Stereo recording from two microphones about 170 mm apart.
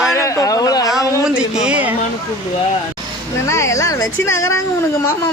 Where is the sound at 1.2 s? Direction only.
5° right (ahead or behind).